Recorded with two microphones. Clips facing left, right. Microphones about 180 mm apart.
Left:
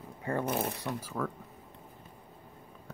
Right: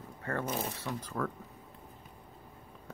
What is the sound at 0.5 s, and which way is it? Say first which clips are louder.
Speech: left 4 dB; 60° left (ahead or behind).